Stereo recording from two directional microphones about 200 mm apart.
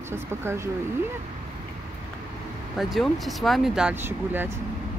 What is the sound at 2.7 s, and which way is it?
Speech, centre (ahead or behind).